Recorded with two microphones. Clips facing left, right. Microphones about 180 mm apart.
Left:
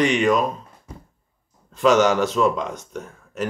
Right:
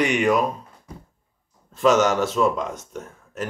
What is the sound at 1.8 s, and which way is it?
Speech, centre (ahead or behind).